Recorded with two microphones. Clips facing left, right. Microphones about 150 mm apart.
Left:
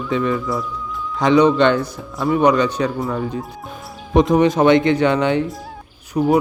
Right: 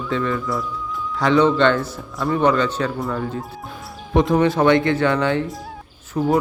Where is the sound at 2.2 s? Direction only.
Centre (ahead or behind).